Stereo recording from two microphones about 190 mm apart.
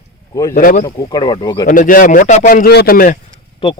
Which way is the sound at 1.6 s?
45° left (ahead or behind).